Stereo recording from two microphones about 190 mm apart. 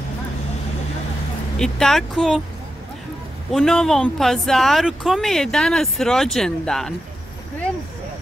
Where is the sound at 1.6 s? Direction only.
5° left (ahead or behind).